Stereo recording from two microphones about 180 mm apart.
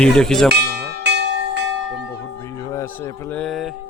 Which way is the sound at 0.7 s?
70° right (ahead or behind).